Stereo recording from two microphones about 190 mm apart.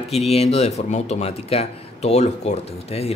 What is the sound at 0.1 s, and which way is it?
Speech, 35° left (ahead or behind).